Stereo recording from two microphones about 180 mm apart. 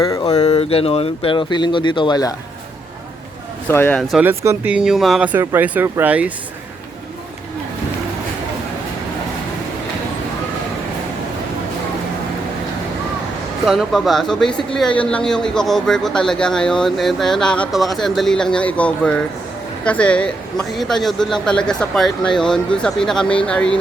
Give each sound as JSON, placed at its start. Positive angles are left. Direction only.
{"t": 0.3, "sound": "speech", "side_deg": 35}
{"t": 3.7, "sound": "speech", "side_deg": 10}
{"t": 4.1, "sound": "speech", "side_deg": -10}
{"t": 13.7, "sound": "speech", "side_deg": 0}